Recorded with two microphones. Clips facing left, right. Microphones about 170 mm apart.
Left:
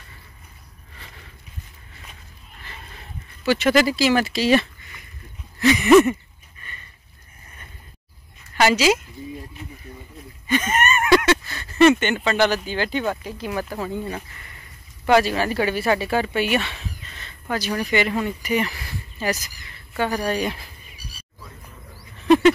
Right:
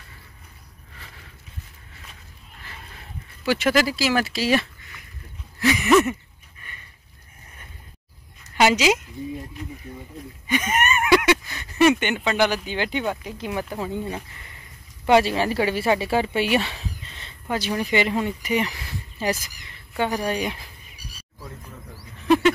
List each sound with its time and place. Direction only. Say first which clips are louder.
3.4 s speech: left 3 dB; 10° right (ahead or behind)
8.5 s speech: left 1 dB; 15° right (ahead or behind)
10.4 s speech: left 2 dB; 10° right (ahead or behind); by 17.3 s 30° right (ahead or behind)
17.5 s speech: even; 20° right (ahead or behind)